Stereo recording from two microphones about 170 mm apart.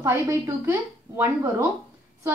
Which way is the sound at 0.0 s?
15° right (ahead or behind).